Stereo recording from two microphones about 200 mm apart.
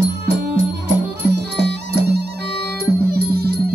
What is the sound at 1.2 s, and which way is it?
Music, 55° right (ahead or behind).